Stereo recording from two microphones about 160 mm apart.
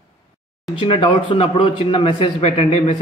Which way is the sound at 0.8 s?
35° left (ahead or behind).